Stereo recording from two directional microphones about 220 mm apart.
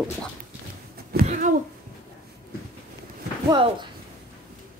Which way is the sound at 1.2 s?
35° right (ahead or behind).